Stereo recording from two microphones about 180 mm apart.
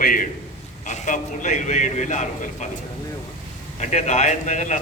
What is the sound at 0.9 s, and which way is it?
A man's voice, 40° left (ahead or behind).